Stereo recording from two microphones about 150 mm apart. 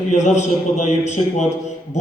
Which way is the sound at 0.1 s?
50° left (ahead or behind).